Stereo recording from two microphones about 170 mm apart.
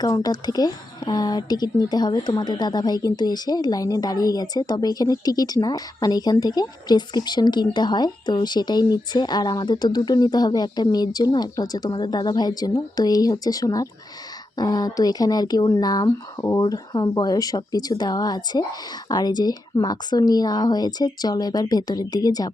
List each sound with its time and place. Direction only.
0.0 s speech: 25° left (ahead or behind)